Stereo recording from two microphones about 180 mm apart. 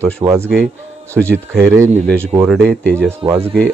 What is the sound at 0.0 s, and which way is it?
Speech, 15° right (ahead or behind).